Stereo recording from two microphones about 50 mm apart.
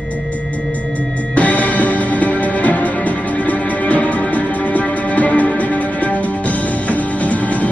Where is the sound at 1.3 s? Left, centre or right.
Left.